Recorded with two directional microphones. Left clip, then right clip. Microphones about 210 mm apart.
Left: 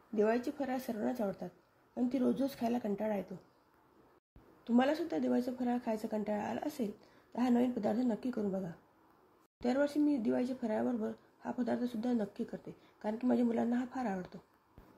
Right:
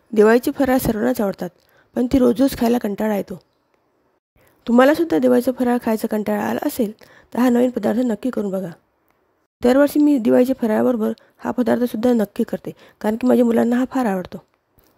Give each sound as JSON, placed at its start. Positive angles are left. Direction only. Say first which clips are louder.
{"t": 0.1, "sound": "speech", "louder": "right 18 dB", "side_deg": -60}
{"t": 4.6, "sound": "speech", "louder": "right 18 dB", "side_deg": -60}